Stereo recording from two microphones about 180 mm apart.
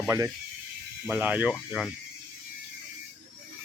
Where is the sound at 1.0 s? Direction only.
10° right (ahead or behind).